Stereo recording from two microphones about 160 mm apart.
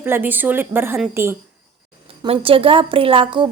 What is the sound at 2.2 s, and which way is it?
A woman's voice, 35° right (ahead or behind).